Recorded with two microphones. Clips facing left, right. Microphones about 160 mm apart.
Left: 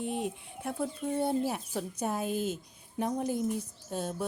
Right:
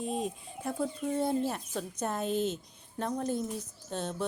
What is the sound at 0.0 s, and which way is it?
Speech, 70° left (ahead or behind).